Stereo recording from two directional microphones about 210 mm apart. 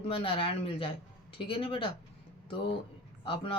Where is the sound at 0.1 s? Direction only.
25° left (ahead or behind).